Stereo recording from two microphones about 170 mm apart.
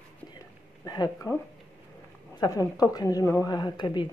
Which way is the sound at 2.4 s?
20° left (ahead or behind).